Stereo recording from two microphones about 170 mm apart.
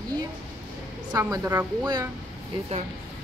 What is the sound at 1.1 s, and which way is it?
Speech, 20° right (ahead or behind).